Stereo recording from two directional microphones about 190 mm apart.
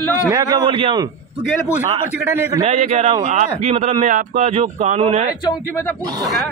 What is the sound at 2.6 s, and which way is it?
A man's voice, 35° right (ahead or behind).